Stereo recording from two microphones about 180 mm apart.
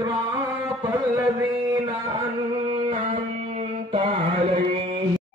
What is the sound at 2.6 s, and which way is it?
Music, 30° right (ahead or behind).